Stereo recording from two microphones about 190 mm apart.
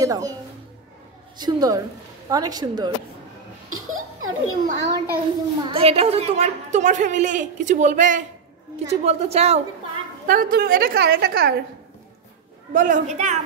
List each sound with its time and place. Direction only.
0.0 s speech: 20° right (ahead or behind)
1.4 s speech: 20° right (ahead or behind)
3.7 s a child's voice: 90° right
4.7 s a child's voice: 65° right (ahead or behind)
5.7 s a woman's voice: 30° right (ahead or behind)
10.2 s a woman's voice: 50° right (ahead or behind)
12.7 s a woman's voice: 45° right (ahead or behind)